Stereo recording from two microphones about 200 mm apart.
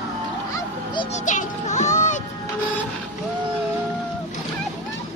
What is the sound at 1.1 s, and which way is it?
Music, 40° left (ahead or behind).